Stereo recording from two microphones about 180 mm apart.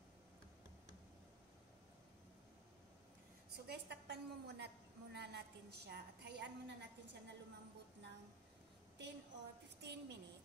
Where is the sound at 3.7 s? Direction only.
65° right (ahead or behind).